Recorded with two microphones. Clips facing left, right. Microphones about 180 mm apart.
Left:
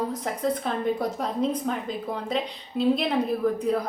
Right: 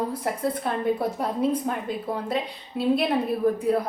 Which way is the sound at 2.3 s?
5° right (ahead or behind).